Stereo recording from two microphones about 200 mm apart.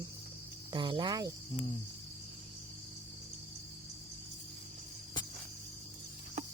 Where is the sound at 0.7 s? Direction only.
25° right (ahead or behind).